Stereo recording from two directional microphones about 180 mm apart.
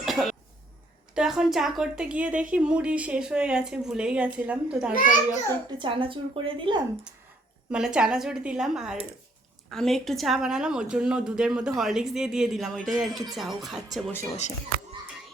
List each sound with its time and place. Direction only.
0.0 s cough: centre (ahead or behind)
1.1 s a woman's voice: 5° right (ahead or behind)
4.9 s a child's voice: 45° left (ahead or behind)
5.7 s speech: 25° right (ahead or behind)
7.7 s a woman's voice: 5° right (ahead or behind)